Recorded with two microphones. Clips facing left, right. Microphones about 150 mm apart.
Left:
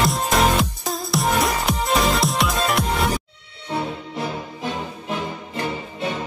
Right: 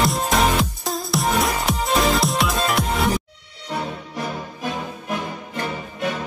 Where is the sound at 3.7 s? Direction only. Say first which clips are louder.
Left 2 dB; 25° left (ahead or behind).